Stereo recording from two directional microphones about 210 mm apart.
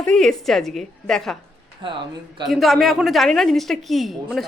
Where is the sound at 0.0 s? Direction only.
5° left (ahead or behind).